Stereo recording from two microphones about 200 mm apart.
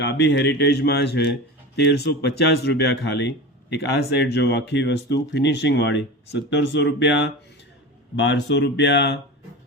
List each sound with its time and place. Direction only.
0.0 s speech: 60° left (ahead or behind)